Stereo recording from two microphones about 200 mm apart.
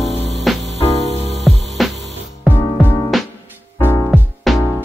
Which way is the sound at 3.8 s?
10° left (ahead or behind).